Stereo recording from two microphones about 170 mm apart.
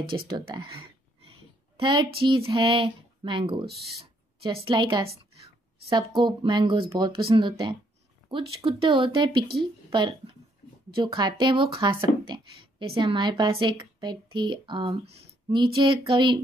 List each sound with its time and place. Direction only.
0.3 s speech: 30° right (ahead or behind)
1.8 s speech: 30° right (ahead or behind)
4.0 s a sound: 35° right (ahead or behind)
4.6 s speech: 30° right (ahead or behind)